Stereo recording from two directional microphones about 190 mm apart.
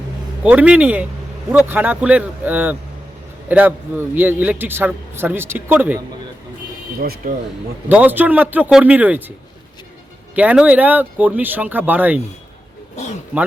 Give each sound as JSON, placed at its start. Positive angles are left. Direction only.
{"t": 0.4, "sound": "a man's voice", "side_deg": -5}
{"t": 7.0, "sound": "speech", "side_deg": -50}
{"t": 7.9, "sound": "a man's voice", "side_deg": -10}
{"t": 10.3, "sound": "a man's voice", "side_deg": -5}